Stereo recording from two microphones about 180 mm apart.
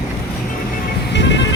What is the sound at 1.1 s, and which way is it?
Music, 75° left (ahead or behind).